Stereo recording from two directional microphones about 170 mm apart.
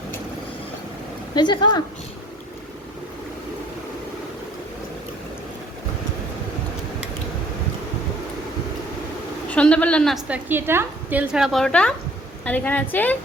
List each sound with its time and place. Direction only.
1.4 s speech: 25° left (ahead or behind)
9.5 s a woman's voice: 5° left (ahead or behind)
10.2 s a woman's voice: 10° right (ahead or behind); by 13.1 s 10° left (ahead or behind)